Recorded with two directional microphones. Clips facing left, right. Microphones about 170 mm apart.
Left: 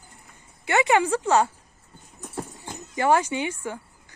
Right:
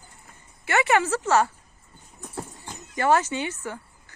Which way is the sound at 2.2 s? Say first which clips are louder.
Left 2 dB; 15° left (ahead or behind).